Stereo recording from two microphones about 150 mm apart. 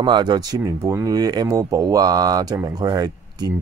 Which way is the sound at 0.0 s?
30° right (ahead or behind).